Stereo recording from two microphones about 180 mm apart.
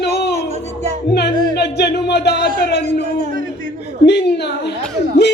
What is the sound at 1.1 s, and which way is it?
Speech, 65° left (ahead or behind).